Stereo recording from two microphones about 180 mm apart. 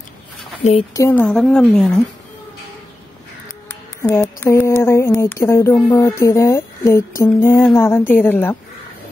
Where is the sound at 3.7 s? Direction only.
15° left (ahead or behind).